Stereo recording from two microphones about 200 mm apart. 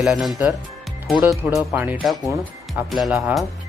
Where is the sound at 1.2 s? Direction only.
15° right (ahead or behind).